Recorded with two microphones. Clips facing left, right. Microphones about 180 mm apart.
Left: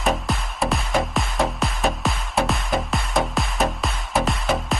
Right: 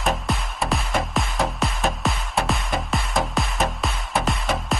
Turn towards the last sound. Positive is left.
turn(degrees=0)  # may be behind; listen again after turning